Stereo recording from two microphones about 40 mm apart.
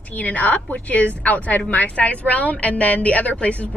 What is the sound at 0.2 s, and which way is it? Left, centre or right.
A woman's voice, left.